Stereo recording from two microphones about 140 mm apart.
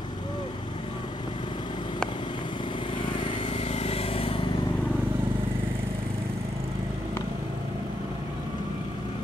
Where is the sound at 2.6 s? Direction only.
35° left (ahead or behind).